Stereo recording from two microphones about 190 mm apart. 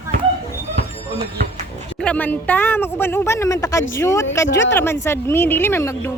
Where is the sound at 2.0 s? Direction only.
5° left (ahead or behind).